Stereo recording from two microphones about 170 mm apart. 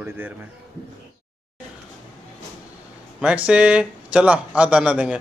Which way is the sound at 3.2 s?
5° right (ahead or behind).